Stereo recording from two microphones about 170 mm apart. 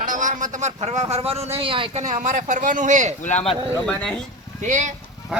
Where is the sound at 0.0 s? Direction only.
50° right (ahead or behind).